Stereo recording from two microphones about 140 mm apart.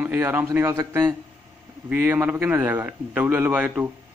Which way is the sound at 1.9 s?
15° right (ahead or behind).